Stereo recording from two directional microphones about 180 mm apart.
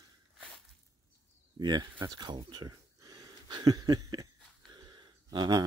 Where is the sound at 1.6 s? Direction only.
25° right (ahead or behind).